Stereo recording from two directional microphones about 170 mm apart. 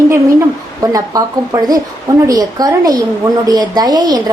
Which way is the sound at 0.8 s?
20° right (ahead or behind).